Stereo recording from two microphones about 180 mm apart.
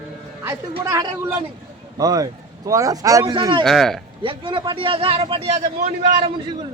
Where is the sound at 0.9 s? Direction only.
15° right (ahead or behind).